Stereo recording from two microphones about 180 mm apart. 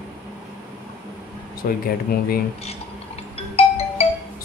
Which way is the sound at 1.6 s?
50° left (ahead or behind).